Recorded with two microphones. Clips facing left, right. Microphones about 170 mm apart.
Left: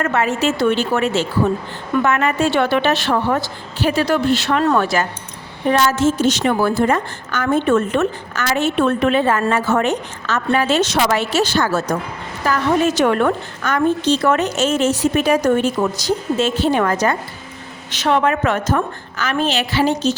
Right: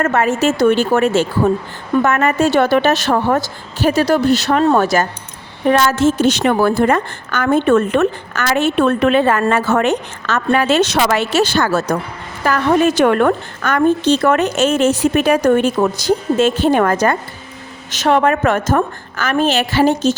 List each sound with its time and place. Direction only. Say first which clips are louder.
0.0 s a woman's voice: right 3 dB; 45° right (ahead or behind)
5.6 s a woman's voice: right 2 dB; 60° right (ahead or behind)
12.5 s a woman's voice: right 3 dB; 55° right (ahead or behind)